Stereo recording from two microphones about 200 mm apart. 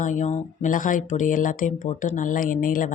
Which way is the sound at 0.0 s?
40° left (ahead or behind).